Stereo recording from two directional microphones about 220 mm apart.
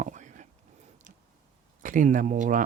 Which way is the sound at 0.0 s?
35° right (ahead or behind).